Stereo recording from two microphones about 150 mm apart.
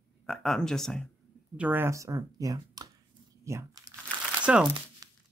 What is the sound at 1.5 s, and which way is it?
Speech, 10° right (ahead or behind).